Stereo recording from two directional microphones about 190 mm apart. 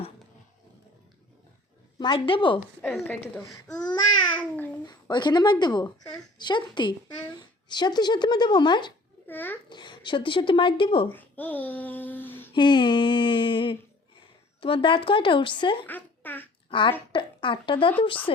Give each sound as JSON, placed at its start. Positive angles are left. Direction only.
{"t": 2.0, "sound": "speech", "side_deg": 25}
{"t": 2.8, "sound": "speech", "side_deg": 5}
{"t": 4.9, "sound": "speech", "side_deg": 25}
{"t": 9.2, "sound": "a child's voice", "side_deg": 10}
{"t": 9.6, "sound": "speech", "side_deg": 25}
{"t": 11.1, "sound": "speech", "side_deg": 10}
{"t": 12.5, "sound": "speech", "side_deg": 25}
{"t": 15.9, "sound": "speech", "side_deg": 10}
{"t": 16.6, "sound": "speech", "side_deg": 25}